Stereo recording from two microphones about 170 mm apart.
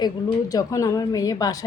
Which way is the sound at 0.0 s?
20° left (ahead or behind).